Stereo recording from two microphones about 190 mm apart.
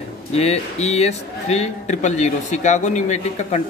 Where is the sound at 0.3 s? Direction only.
35° left (ahead or behind).